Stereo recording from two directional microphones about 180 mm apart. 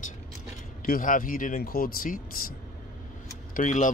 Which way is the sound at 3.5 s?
45° left (ahead or behind).